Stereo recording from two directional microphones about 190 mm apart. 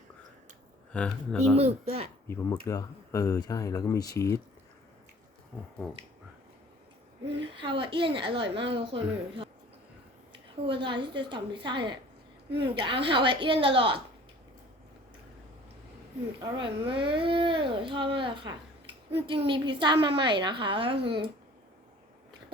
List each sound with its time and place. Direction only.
0.9 s speech: 5° left (ahead or behind)
1.5 s speech: 35° right (ahead or behind)
2.2 s speech: 15° left (ahead or behind)
7.4 s speech: 25° right (ahead or behind)
10.7 s speech: 25° right (ahead or behind)
16.4 s speech: 25° right (ahead or behind)